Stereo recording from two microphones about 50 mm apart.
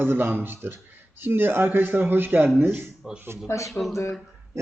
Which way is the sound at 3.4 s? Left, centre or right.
Left.